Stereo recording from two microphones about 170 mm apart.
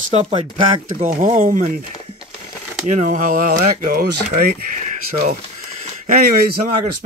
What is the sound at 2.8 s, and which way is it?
Speech, 45° right (ahead or behind).